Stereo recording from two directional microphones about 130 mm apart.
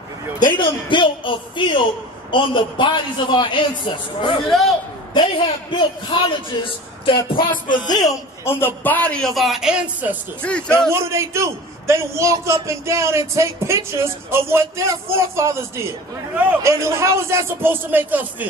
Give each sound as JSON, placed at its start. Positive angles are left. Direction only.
{"t": 0.6, "sound": "a man's voice", "side_deg": 40}
{"t": 4.5, "sound": "a man's voice", "side_deg": 0}
{"t": 5.1, "sound": "a man's voice", "side_deg": 40}
{"t": 8.5, "sound": "a man's voice", "side_deg": 15}
{"t": 10.4, "sound": "a man's voice", "side_deg": 10}
{"t": 10.9, "sound": "a man's voice", "side_deg": -20}